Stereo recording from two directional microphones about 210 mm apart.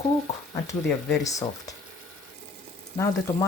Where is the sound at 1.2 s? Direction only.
15° left (ahead or behind).